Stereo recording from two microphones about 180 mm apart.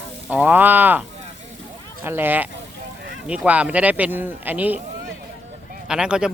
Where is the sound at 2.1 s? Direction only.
10° right (ahead or behind).